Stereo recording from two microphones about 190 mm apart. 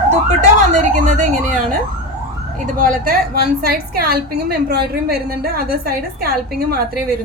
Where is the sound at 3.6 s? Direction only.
55° right (ahead or behind).